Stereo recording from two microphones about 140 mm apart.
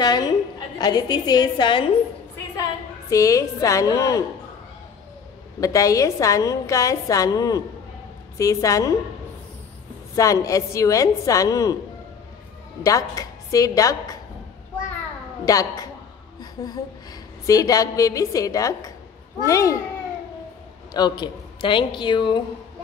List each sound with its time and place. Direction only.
0.0 s a woman's voice: 30° left (ahead or behind)
5.6 s a woman's voice: 25° left (ahead or behind)
10.1 s a woman's voice: 25° left (ahead or behind)
12.8 s a woman's voice: 25° left (ahead or behind)
15.4 s a woman's voice: 25° left (ahead or behind)
20.9 s a woman's voice: 30° left (ahead or behind)